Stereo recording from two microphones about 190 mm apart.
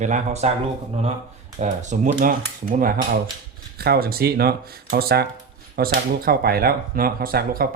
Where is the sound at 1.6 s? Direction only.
40° right (ahead or behind).